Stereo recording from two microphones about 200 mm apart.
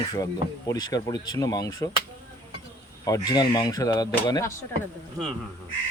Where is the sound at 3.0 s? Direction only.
20° left (ahead or behind).